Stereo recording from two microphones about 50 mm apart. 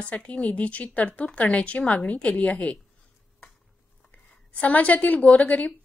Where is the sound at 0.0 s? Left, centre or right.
Left.